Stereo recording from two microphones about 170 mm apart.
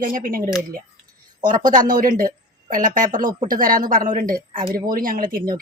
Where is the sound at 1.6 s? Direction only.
55° right (ahead or behind).